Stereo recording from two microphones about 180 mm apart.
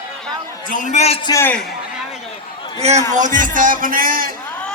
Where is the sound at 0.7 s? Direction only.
40° left (ahead or behind).